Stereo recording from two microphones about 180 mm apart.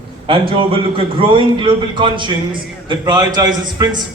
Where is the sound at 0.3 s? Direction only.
30° right (ahead or behind).